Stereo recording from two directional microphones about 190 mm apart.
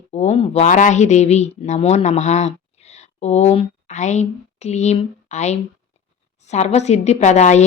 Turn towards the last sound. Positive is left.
turn(degrees=35)  # may be behind; listen again after turning